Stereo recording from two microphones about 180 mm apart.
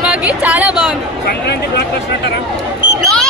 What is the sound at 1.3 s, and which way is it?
Speech, 65° left (ahead or behind).